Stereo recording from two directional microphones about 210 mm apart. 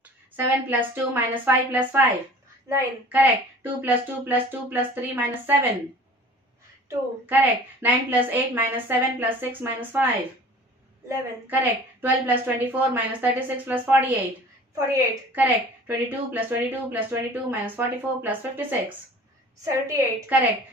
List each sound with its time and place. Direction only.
0.4 s a woman's voice: 10° right (ahead or behind)
6.9 s a woman's voice: 10° right (ahead or behind)
12.0 s a woman's voice: 10° right (ahead or behind)